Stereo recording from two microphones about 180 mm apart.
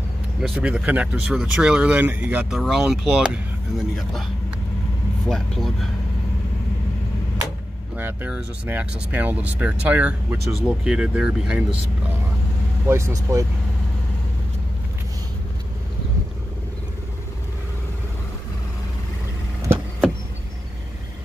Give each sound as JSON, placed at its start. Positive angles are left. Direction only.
{"t": 0.4, "sound": "speech", "side_deg": -5}
{"t": 5.3, "sound": "speech", "side_deg": 0}
{"t": 7.9, "sound": "speech", "side_deg": -10}
{"t": 12.8, "sound": "speech", "side_deg": -15}